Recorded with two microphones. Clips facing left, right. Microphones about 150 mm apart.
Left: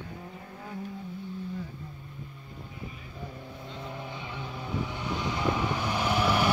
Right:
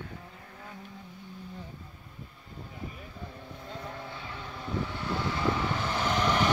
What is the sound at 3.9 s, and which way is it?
Vehicle, 15° left (ahead or behind).